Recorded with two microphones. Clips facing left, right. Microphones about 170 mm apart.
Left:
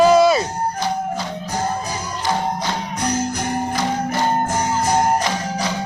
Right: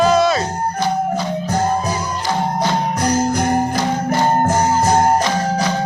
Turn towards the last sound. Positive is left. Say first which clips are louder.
# right 4 dB
turn(degrees=-50)  # may be behind; listen again after turning